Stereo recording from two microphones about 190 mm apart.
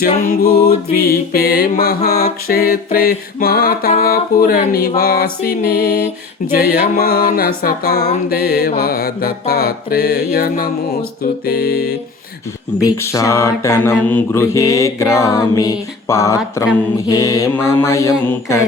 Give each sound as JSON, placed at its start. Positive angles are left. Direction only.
{"t": 0.0, "sound": "music", "side_deg": 50}
{"t": 1.0, "sound": "speech", "side_deg": 55}
{"t": 2.0, "sound": "music", "side_deg": 55}
{"t": 6.5, "sound": "speech", "side_deg": 55}
{"t": 8.8, "sound": "music", "side_deg": 55}
{"t": 11.2, "sound": "speech", "side_deg": 55}
{"t": 12.8, "sound": "mantra", "side_deg": 15}